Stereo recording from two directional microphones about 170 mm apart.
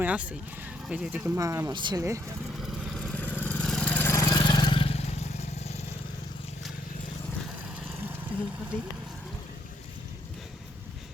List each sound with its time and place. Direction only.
0.0 s speech: 10° right (ahead or behind)
1.4 s speech: 20° right (ahead or behind)
2.6 s vehicle: centre (ahead or behind); by 5.8 s 40° left (ahead or behind)